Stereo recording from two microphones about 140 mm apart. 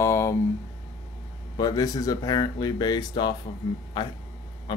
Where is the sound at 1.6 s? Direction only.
25° left (ahead or behind).